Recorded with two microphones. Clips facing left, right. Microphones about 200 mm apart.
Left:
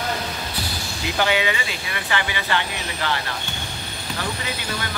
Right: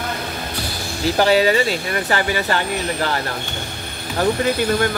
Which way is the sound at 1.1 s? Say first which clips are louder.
Right 7 dB; 35° right (ahead or behind).